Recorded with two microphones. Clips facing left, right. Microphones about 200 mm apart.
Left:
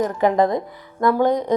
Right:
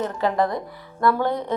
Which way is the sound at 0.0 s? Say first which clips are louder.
Left 5 dB; 15° left (ahead or behind).